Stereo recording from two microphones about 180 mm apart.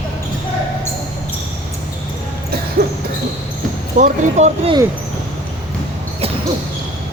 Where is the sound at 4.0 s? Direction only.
40° right (ahead or behind).